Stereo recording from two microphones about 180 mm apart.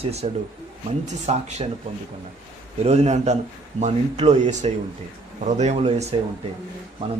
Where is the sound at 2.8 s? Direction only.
35° right (ahead or behind).